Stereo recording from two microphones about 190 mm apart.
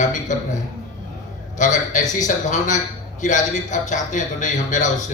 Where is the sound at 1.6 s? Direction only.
40° left (ahead or behind).